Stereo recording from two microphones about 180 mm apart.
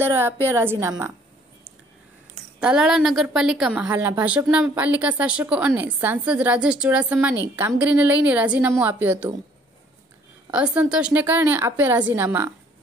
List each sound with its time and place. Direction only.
0.0 s a woman's voice: 10° right (ahead or behind)
2.6 s a woman's voice: 5° right (ahead or behind)
10.5 s a woman's voice: 5° right (ahead or behind)